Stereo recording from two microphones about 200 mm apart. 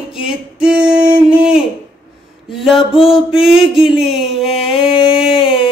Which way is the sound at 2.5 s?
Centre (ahead or behind).